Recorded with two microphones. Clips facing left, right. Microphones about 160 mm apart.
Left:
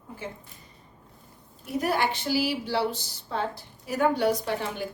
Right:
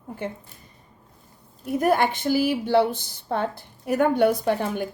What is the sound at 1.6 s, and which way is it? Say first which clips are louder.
Speech: right 5 dB; 50° right (ahead or behind).